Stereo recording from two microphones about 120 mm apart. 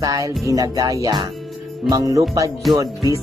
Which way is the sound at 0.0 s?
30° right (ahead or behind).